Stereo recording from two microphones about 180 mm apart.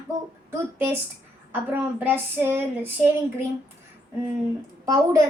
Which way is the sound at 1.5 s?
10° right (ahead or behind).